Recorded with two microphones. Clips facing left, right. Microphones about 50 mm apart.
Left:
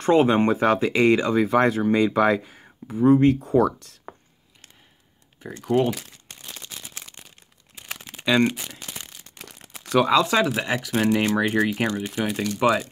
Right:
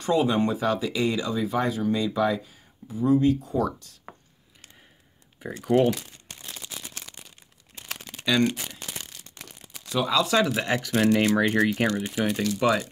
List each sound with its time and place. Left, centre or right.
0.0 s speech: left
3.4 s speech: left
5.4 s speech: centre
7.7 s crumpling: centre
8.1 s speech: left
9.4 s crumpling: left
10.0 s speech: left
10.4 s speech: centre